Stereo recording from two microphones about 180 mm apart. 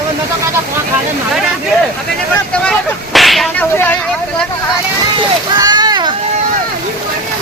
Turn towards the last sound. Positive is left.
turn(degrees=-25)  # may be behind; listen again after turning